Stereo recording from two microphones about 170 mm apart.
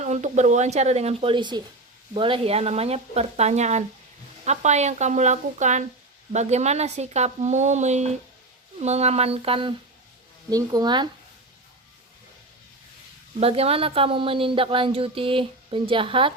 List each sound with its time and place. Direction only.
0.0 s speech: 45° right (ahead or behind)
10.5 s speech: 20° right (ahead or behind)
13.4 s speech: 35° right (ahead or behind)